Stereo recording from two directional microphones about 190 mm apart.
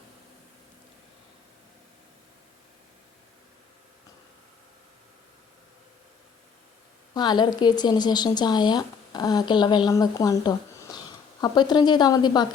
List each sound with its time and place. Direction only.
7.1 s a woman's voice: 20° left (ahead or behind)